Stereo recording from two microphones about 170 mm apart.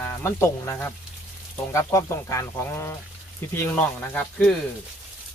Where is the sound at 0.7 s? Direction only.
15° left (ahead or behind).